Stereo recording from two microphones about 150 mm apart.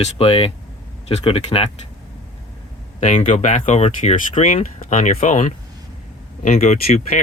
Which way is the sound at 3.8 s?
45° left (ahead or behind).